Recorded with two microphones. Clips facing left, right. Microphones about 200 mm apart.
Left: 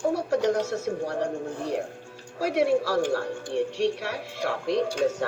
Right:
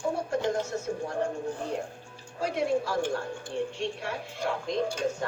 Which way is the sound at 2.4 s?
75° left (ahead or behind).